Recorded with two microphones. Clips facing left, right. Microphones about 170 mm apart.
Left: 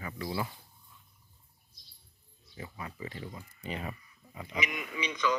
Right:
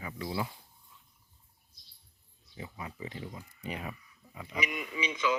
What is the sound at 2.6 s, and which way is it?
Speech, 15° right (ahead or behind).